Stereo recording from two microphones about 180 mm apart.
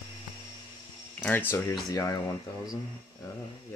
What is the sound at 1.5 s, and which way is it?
Speech, 20° left (ahead or behind).